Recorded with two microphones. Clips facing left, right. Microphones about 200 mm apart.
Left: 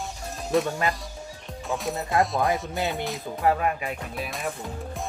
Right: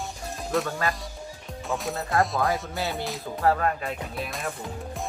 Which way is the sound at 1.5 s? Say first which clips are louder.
Left 1 dB; centre (ahead or behind).